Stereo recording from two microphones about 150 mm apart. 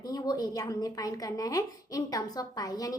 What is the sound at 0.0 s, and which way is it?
A woman's voice, 25° left (ahead or behind).